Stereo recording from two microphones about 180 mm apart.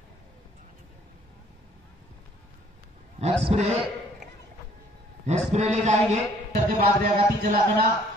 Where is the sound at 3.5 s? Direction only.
35° right (ahead or behind).